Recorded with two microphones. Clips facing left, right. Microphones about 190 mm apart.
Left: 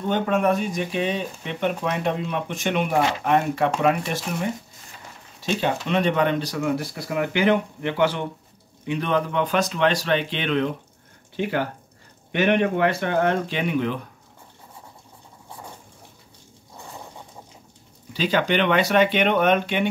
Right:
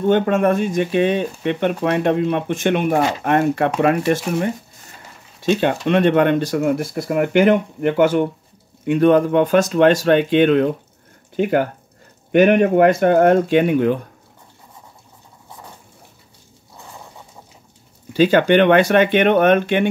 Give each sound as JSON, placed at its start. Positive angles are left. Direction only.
{"t": 0.0, "sound": "speech", "side_deg": -55}
{"t": 18.1, "sound": "speech", "side_deg": -55}